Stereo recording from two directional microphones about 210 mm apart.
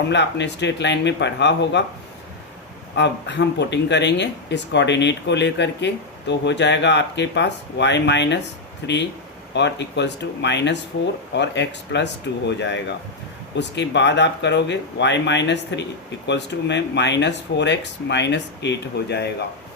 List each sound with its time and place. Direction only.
0.1 s speech: 55° left (ahead or behind)
2.9 s speech: 55° left (ahead or behind)